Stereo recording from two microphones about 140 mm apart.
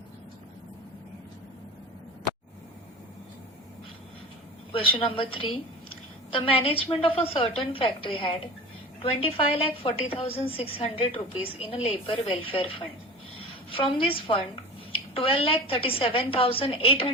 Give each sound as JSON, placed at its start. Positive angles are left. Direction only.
{"t": 4.7, "sound": "speech", "side_deg": 40}